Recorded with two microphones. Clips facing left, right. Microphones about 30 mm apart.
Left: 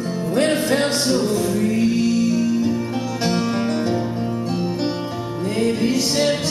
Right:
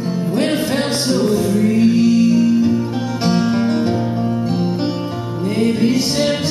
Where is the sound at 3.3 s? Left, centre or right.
Centre.